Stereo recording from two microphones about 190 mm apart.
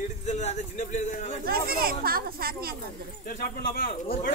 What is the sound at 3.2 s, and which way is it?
Speech, 50° left (ahead or behind).